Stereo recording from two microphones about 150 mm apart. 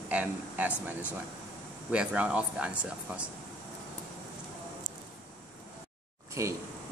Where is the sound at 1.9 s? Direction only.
5° right (ahead or behind).